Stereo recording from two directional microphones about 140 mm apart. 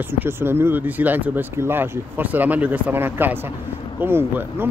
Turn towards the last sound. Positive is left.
turn(degrees=-15)  # may be behind; listen again after turning